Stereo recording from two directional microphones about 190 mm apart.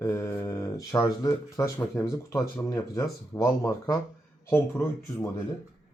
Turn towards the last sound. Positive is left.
turn(degrees=10)  # may be behind; listen again after turning